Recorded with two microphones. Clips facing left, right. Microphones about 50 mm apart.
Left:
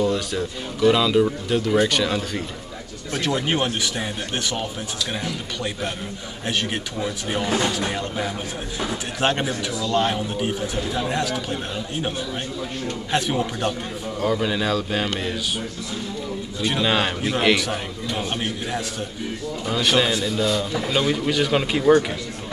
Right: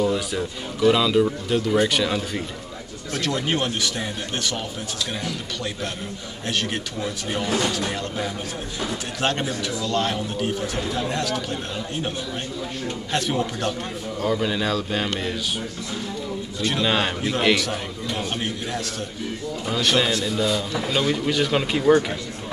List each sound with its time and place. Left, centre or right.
0.0 s speech: centre
3.1 s speech: centre
13.1 s speech: centre
14.2 s speech: centre
16.6 s speech: centre
19.6 s speech: centre